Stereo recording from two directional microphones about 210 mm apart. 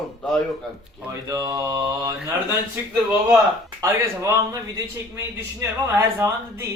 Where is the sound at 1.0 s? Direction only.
15° right (ahead or behind).